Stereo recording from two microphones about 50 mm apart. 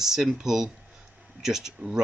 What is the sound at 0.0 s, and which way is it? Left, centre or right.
Speech, centre.